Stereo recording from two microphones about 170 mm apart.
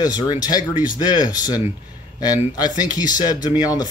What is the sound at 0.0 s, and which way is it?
Speech, 25° left (ahead or behind).